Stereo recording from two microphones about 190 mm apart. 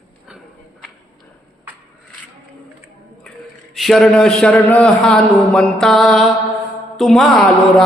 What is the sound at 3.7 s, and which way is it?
Mantra, centre (ahead or behind).